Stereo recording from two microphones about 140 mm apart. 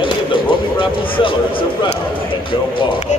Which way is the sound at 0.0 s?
35° left (ahead or behind).